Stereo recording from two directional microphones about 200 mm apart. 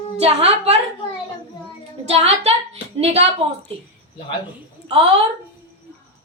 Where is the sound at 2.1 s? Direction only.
30° right (ahead or behind).